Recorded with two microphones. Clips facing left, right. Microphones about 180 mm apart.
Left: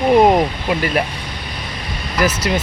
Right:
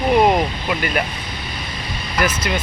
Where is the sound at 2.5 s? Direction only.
35° left (ahead or behind).